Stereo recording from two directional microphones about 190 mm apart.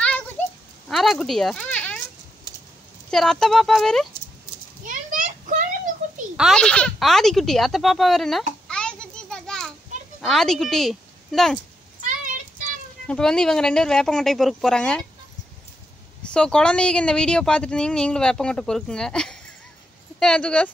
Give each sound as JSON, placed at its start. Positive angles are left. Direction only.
{"t": 0.8, "sound": "speech", "side_deg": 0}
{"t": 3.1, "sound": "speech", "side_deg": 5}
{"t": 4.8, "sound": "a sound", "side_deg": -45}
{"t": 6.3, "sound": "a woman's voice", "side_deg": 0}
{"t": 13.0, "sound": "speech", "side_deg": 5}
{"t": 16.3, "sound": "speech", "side_deg": 5}